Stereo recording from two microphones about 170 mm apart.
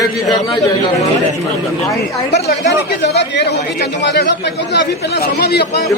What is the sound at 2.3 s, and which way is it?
Speech, 80° left.